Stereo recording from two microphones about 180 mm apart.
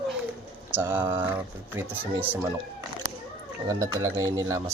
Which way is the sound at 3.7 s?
20° right (ahead or behind).